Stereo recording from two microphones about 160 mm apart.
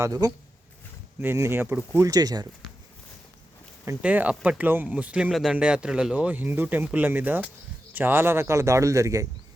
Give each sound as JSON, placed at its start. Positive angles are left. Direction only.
{"t": 0.0, "sound": "speech", "side_deg": -20}
{"t": 3.8, "sound": "speech", "side_deg": -10}